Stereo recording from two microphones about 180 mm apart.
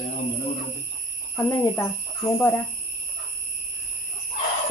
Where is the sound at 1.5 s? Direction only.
15° left (ahead or behind).